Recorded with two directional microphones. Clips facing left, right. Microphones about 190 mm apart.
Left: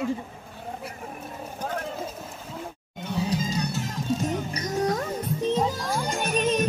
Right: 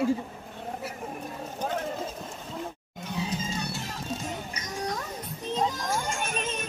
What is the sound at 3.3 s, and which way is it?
Music, 35° left (ahead or behind).